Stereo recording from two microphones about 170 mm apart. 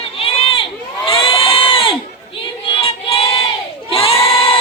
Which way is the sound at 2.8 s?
35° left (ahead or behind).